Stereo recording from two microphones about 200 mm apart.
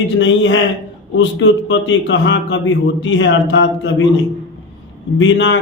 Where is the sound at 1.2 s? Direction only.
65° left (ahead or behind).